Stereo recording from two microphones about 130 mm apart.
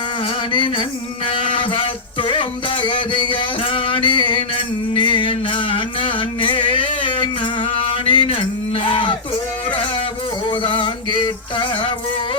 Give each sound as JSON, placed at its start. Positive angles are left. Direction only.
{"t": 0.5, "sound": "a sound", "side_deg": 40}
{"t": 2.2, "sound": "music", "side_deg": 40}
{"t": 10.4, "sound": "music", "side_deg": 40}